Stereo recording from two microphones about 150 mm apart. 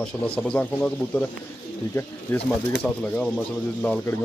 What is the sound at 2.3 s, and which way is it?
Speech, 10° left (ahead or behind).